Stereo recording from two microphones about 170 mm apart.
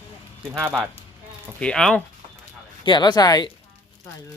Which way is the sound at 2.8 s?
25° left (ahead or behind).